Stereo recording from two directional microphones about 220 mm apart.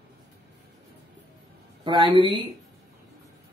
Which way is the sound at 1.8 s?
20° right (ahead or behind).